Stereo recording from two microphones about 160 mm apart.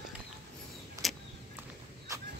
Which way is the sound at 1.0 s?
20° right (ahead or behind).